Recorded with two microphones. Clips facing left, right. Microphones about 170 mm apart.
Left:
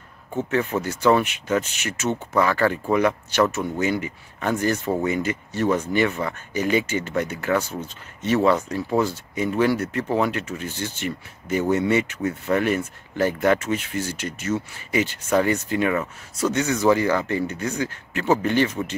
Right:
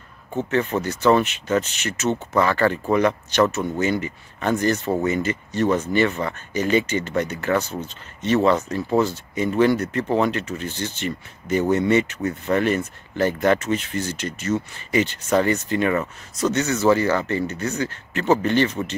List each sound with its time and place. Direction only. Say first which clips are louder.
0.4 s speech: right 1 dB; 10° left (ahead or behind)